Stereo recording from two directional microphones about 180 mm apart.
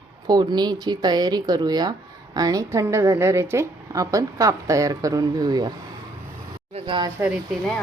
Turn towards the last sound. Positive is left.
turn(degrees=-10)  # may be behind; listen again after turning